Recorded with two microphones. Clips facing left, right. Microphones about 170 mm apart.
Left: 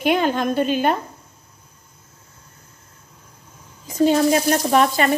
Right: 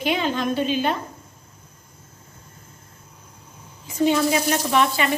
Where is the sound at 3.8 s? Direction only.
40° left (ahead or behind).